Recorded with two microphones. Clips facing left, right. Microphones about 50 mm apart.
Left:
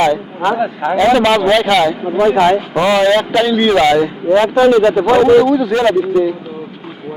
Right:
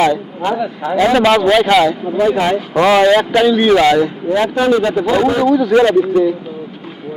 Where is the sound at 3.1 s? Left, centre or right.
Centre.